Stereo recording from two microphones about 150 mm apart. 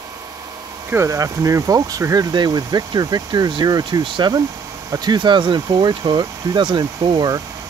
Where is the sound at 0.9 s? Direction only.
20° right (ahead or behind).